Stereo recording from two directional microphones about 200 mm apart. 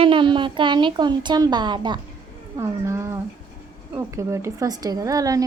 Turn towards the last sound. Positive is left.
turn(degrees=-15)  # may be behind; listen again after turning